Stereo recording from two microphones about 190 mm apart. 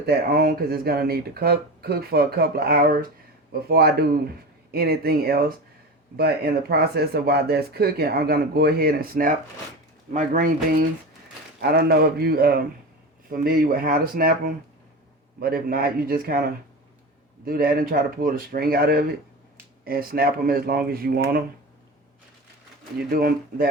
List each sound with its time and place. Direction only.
0.0 s speech: 55° right (ahead or behind)
23.0 s speech: 50° right (ahead or behind)